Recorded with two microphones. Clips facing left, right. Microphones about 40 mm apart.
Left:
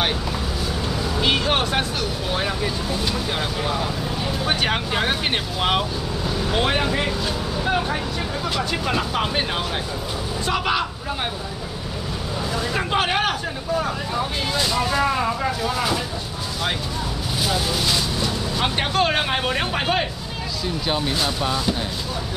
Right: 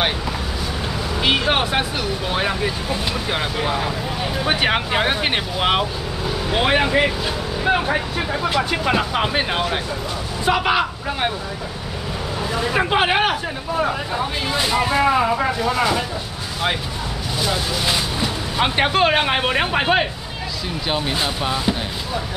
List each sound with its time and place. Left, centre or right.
1.2 s speech: centre
12.5 s speech: right
15.6 s speech: centre
17.8 s speech: right